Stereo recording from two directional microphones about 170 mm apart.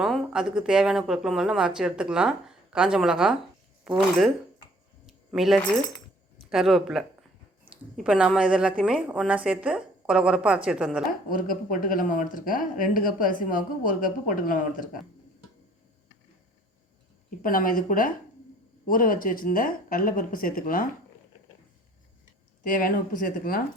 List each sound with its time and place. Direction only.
0.0 s speech: 5° right (ahead or behind)
5.0 s a sound: centre (ahead or behind)
6.5 s speech: centre (ahead or behind)
11.3 s speech: 55° left (ahead or behind)
17.4 s a woman's voice: 55° left (ahead or behind)
22.6 s speech: 55° left (ahead or behind)